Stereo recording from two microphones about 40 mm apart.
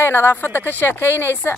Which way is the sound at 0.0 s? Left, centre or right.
Left.